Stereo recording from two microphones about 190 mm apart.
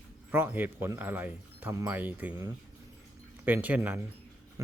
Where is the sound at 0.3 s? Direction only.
10° right (ahead or behind).